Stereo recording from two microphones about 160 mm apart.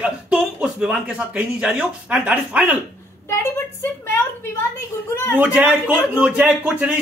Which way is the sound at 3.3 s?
15° left (ahead or behind).